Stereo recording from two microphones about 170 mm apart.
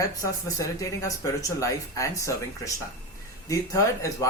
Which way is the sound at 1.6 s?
20° left (ahead or behind).